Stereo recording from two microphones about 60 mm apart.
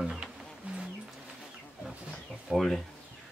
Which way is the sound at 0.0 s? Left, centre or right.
Centre.